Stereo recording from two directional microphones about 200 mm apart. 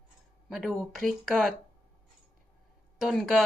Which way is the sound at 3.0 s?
Centre (ahead or behind).